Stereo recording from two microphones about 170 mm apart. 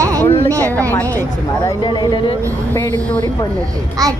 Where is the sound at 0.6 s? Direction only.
10° left (ahead or behind).